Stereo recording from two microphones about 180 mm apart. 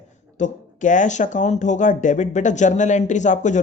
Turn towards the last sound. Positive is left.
turn(degrees=40)  # may be behind; listen again after turning